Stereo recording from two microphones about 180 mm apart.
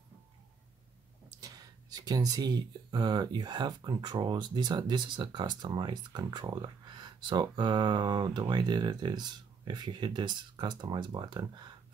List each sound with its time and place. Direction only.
1.4 s speech: 20° right (ahead or behind)